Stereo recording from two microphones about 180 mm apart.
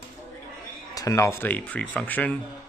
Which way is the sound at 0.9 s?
15° left (ahead or behind).